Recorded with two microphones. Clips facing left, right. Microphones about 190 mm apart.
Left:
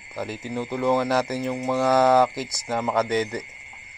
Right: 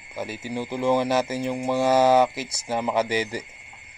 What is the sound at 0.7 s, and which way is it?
Speech, 30° right (ahead or behind).